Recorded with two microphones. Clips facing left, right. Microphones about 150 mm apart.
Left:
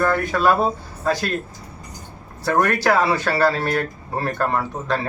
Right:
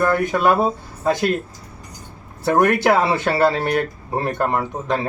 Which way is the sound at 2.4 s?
20° right (ahead or behind).